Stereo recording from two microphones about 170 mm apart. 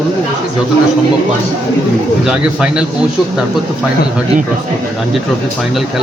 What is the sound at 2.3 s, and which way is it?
Speech, 5° right (ahead or behind).